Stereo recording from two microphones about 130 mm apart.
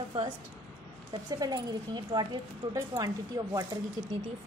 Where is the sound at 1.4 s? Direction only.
30° right (ahead or behind).